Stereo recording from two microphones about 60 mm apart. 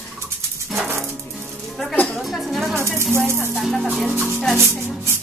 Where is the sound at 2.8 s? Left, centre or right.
Right.